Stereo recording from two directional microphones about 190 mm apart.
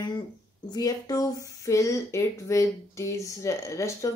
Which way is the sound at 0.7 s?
20° left (ahead or behind).